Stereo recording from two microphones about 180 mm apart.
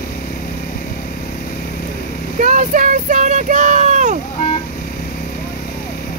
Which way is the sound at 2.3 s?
45° right (ahead or behind).